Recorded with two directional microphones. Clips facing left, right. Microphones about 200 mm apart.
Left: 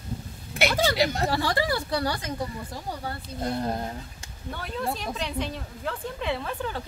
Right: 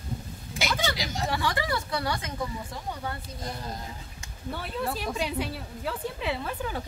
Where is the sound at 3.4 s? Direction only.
60° left (ahead or behind).